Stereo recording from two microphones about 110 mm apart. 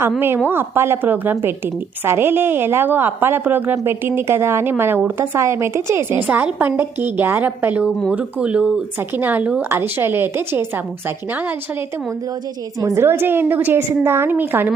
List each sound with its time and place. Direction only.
0.4 s a woman's voice: 20° right (ahead or behind)
12.8 s a woman's voice: 25° right (ahead or behind)